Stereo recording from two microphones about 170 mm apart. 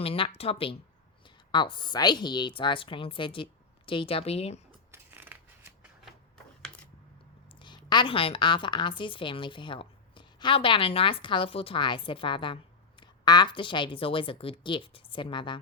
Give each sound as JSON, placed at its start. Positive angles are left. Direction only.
{"t": 0.0, "sound": "a woman's voice", "side_deg": 35}
{"t": 4.9, "sound": "scissors", "side_deg": -15}
{"t": 7.6, "sound": "a woman's voice", "side_deg": 25}